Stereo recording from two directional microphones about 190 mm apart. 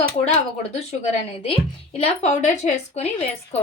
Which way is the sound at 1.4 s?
30° left (ahead or behind).